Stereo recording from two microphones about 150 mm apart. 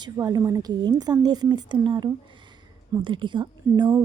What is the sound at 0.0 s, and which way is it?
A woman's voice, 25° right (ahead or behind).